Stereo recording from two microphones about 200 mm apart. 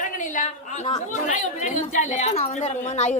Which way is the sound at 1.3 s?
40° left (ahead or behind).